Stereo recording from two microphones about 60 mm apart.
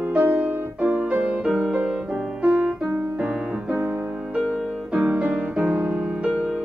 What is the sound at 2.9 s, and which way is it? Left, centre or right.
Piano, right.